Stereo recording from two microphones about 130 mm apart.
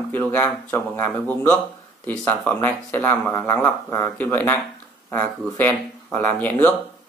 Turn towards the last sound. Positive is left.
turn(degrees=15)  # may be behind; listen again after turning